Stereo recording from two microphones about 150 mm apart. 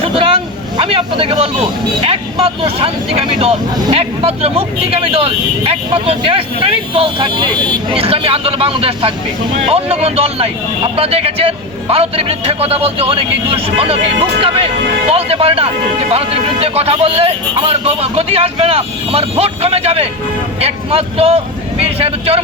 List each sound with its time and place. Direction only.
0.0 s vehicle: 40° right (ahead or behind)
2.0 s speech: 40° right (ahead or behind)